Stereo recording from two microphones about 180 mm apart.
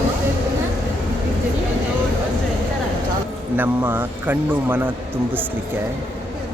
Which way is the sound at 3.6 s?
10° right (ahead or behind).